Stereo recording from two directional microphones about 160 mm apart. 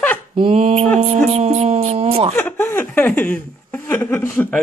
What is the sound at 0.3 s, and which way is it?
Speech, 35° right (ahead or behind).